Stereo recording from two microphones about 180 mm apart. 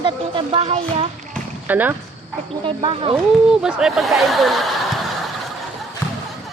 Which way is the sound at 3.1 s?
5° right (ahead or behind).